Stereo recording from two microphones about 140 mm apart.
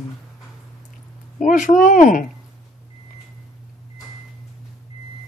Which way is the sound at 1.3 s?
70° left (ahead or behind).